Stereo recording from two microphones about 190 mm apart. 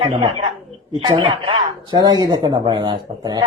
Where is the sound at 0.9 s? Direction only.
25° right (ahead or behind).